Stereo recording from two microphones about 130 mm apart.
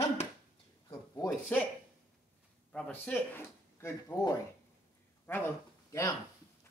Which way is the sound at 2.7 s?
10° left (ahead or behind).